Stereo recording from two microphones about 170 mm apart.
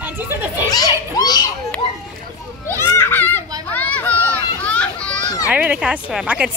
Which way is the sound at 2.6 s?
15° left (ahead or behind).